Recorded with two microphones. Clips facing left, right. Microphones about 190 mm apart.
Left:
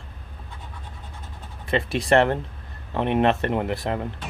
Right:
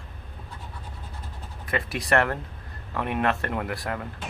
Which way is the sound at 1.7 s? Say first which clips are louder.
Left 5 dB; 25° left (ahead or behind).